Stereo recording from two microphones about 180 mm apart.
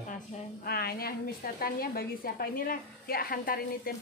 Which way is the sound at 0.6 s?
60° left (ahead or behind).